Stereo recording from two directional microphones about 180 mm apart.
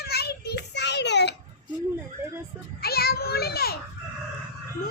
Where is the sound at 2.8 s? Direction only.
60° left (ahead or behind).